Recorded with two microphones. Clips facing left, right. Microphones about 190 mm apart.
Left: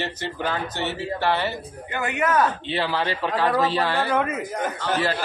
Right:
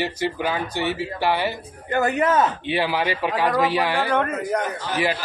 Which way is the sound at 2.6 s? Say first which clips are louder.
Right 2 dB; 15° right (ahead or behind).